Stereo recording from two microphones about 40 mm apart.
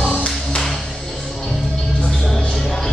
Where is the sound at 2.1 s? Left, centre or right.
Centre.